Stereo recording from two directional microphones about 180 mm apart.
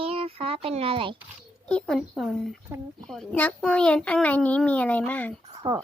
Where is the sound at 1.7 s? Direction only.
5° left (ahead or behind).